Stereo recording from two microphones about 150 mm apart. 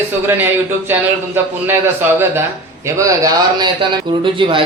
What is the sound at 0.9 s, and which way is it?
A man's voice, 15° right (ahead or behind).